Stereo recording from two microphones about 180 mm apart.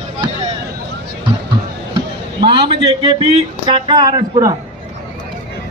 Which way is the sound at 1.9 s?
25° right (ahead or behind).